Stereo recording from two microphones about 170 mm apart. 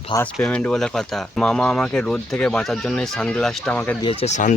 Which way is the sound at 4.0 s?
35° left (ahead or behind).